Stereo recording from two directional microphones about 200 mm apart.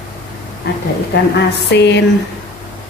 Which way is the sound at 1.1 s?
60° left (ahead or behind).